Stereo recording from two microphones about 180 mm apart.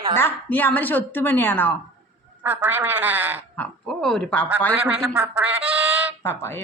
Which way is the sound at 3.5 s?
5° left (ahead or behind).